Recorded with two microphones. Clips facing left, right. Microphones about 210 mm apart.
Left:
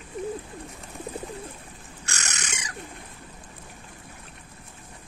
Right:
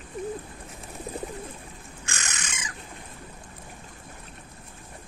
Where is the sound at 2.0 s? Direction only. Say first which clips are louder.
Left 1 dB; 40° left (ahead or behind).